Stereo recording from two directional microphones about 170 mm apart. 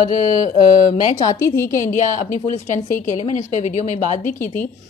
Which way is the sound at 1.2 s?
15° left (ahead or behind).